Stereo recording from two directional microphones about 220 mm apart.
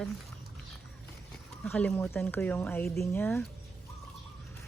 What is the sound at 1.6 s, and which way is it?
Speech, 5° left (ahead or behind).